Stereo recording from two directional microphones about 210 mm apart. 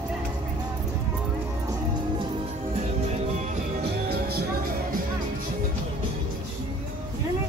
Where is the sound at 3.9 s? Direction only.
50° right (ahead or behind).